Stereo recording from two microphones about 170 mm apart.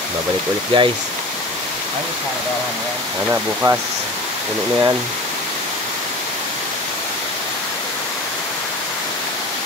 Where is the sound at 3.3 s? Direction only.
15° right (ahead or behind).